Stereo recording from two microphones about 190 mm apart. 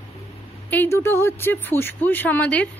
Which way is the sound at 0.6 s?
10° left (ahead or behind).